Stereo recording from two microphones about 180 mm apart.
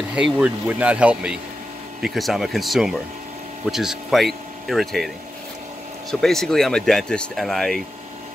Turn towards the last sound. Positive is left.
turn(degrees=0)  # may be behind; listen again after turning